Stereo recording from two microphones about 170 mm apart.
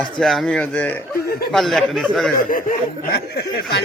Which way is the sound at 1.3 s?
65° left (ahead or behind).